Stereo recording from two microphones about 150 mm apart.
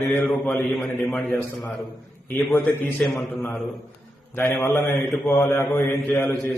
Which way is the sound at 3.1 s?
Centre (ahead or behind).